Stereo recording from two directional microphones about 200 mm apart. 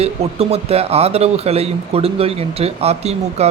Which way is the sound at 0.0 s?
30° right (ahead or behind).